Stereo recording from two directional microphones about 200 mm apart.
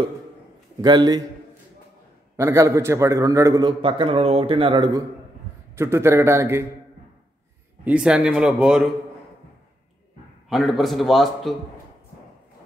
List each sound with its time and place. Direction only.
0.7 s a man's voice: 20° right (ahead or behind)
2.3 s a man's voice: 15° right (ahead or behind)
7.8 s a man's voice: 5° right (ahead or behind)
10.5 s a man's voice: centre (ahead or behind)